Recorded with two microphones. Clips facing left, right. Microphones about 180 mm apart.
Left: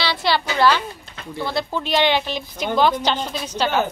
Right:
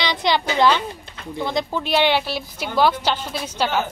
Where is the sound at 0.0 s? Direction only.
15° right (ahead or behind).